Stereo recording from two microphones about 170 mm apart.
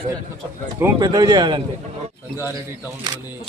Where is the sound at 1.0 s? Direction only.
25° right (ahead or behind).